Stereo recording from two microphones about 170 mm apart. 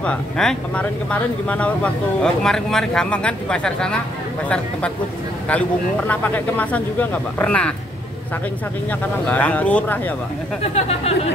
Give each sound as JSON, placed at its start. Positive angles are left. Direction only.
{"t": 0.0, "sound": "speech", "side_deg": 5}
{"t": 5.5, "sound": "speech", "side_deg": 5}
{"t": 9.2, "sound": "speech", "side_deg": 10}
{"t": 10.6, "sound": "speech", "side_deg": 35}